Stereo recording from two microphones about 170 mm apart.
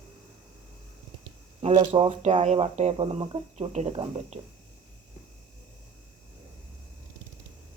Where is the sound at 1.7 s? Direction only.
30° right (ahead or behind).